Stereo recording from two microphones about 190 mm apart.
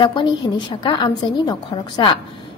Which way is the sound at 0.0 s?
25° left (ahead or behind).